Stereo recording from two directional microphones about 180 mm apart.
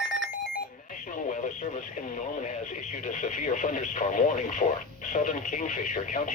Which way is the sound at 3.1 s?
45° left (ahead or behind).